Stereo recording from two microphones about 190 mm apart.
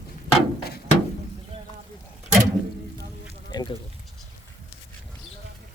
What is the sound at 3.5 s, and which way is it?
Sheep, 20° left (ahead or behind).